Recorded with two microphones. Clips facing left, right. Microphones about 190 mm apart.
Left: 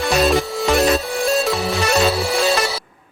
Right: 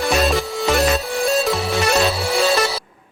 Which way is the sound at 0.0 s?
Centre (ahead or behind).